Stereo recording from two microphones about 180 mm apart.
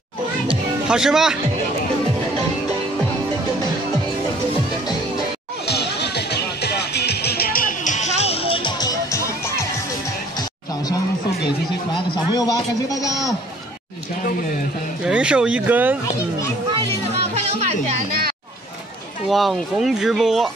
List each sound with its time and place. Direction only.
0.8 s speech: 5° right (ahead or behind)
5.7 s music: 65° left (ahead or behind); by 9.7 s 20° left (ahead or behind)
12.4 s a man's voice: 20° left (ahead or behind)
15.0 s speech: 5° right (ahead or behind)
16.7 s music: 35° right (ahead or behind)
19.2 s speech: centre (ahead or behind)